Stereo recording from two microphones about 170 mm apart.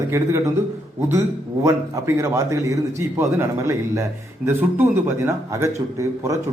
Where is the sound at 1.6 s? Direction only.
15° right (ahead or behind).